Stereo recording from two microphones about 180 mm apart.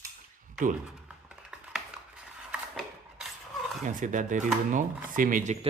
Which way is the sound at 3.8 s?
45° right (ahead or behind).